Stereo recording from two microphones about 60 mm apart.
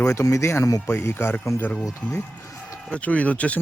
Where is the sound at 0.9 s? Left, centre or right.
Left.